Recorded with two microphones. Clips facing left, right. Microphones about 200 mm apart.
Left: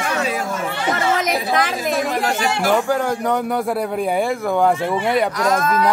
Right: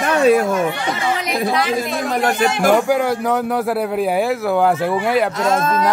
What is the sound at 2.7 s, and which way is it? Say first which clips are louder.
A man's voice: right 3 dB; 10° right (ahead or behind).